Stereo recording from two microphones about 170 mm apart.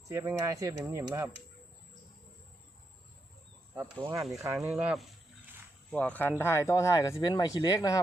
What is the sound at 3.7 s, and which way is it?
Speech, 20° right (ahead or behind).